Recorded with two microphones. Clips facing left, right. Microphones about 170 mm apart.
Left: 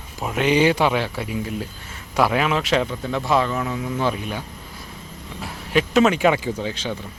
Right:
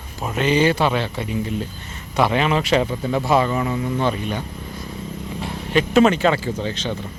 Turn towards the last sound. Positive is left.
turn(degrees=10)  # may be behind; listen again after turning